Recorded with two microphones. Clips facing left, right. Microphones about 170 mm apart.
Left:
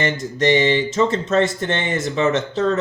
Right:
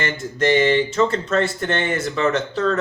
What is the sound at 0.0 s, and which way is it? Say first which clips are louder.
Speech: left 2 dB; 20° left (ahead or behind).